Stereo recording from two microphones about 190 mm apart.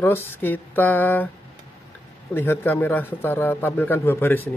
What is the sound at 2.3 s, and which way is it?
A man's voice, 10° left (ahead or behind).